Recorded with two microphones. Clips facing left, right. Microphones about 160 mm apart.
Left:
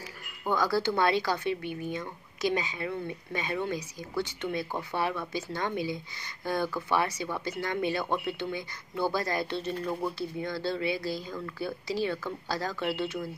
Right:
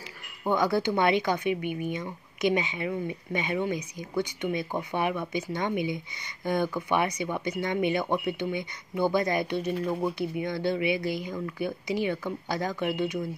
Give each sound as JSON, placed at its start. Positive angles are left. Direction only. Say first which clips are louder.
{"t": 0.5, "sound": "speech", "louder": "right 2 dB", "side_deg": -20}